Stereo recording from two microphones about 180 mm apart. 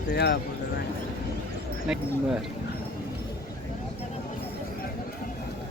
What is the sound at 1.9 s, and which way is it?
Speech, 5° right (ahead or behind).